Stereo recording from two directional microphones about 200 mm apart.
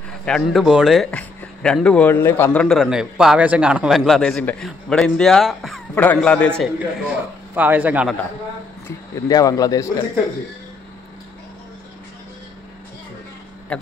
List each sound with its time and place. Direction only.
0.2 s a man's voice: centre (ahead or behind)
8.8 s speech: 15° left (ahead or behind)
13.7 s speech: 5° left (ahead or behind)